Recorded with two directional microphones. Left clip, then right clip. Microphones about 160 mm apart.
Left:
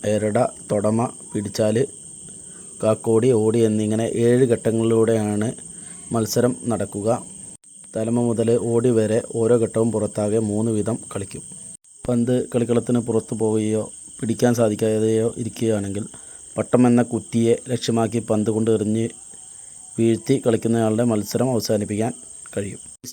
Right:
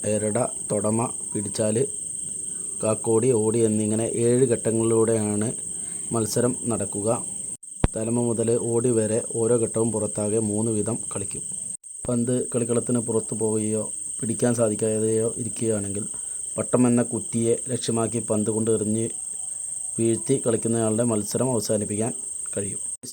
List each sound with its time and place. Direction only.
0.0 s speech: 20° left (ahead or behind)